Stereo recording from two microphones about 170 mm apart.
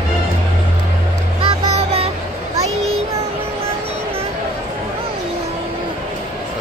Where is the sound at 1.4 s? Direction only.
35° right (ahead or behind).